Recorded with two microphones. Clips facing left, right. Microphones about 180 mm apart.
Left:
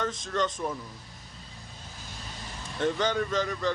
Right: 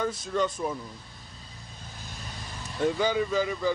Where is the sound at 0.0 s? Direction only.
10° right (ahead or behind).